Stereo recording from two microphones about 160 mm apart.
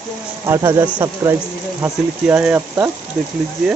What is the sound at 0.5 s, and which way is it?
Speech, 20° right (ahead or behind).